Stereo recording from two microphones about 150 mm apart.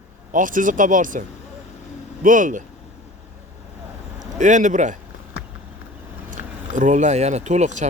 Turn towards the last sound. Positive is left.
turn(degrees=-50)  # may be behind; listen again after turning